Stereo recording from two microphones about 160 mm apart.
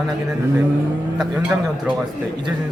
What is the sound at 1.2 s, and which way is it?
Speech, 5° right (ahead or behind).